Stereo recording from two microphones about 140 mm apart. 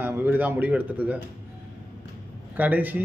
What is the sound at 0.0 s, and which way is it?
A man's voice, 15° right (ahead or behind).